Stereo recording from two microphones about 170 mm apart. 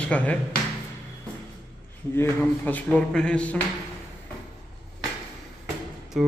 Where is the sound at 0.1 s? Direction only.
10° left (ahead or behind).